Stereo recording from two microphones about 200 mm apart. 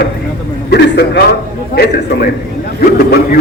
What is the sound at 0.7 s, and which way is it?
A man's voice, 55° left (ahead or behind).